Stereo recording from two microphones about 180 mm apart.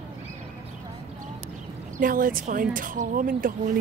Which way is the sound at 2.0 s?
50° right (ahead or behind).